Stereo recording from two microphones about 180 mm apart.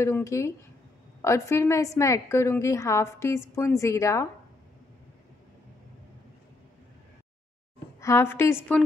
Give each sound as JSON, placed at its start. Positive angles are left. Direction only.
{"t": 0.0, "sound": "a woman's voice", "side_deg": 15}
{"t": 8.0, "sound": "a woman's voice", "side_deg": 15}